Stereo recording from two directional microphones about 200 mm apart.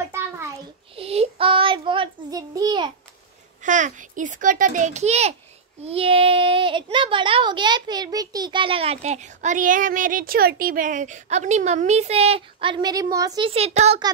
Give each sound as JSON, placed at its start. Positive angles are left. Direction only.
{"t": 0.9, "sound": "child singing", "side_deg": -30}
{"t": 3.6, "sound": "a child's voice", "side_deg": -40}